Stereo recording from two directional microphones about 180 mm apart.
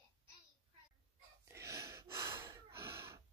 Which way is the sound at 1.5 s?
15° right (ahead or behind).